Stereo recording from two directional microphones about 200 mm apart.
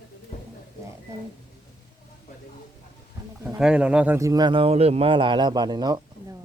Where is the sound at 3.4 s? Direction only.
5° right (ahead or behind).